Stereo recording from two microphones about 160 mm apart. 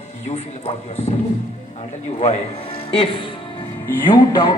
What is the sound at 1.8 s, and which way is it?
Music, 40° left (ahead or behind).